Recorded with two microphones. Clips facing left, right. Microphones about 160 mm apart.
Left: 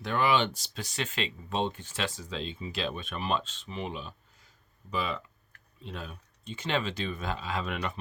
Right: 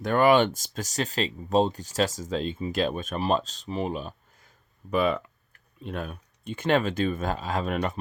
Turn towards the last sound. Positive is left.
turn(degrees=-40)  # may be behind; listen again after turning